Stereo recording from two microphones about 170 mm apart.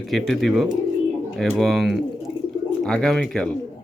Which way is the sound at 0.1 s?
Centre (ahead or behind).